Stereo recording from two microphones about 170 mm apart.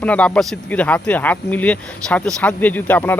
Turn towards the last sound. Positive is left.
turn(degrees=10)  # may be behind; listen again after turning